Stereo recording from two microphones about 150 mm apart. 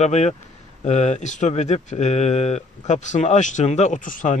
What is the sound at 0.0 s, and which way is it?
Speech, 50° left (ahead or behind).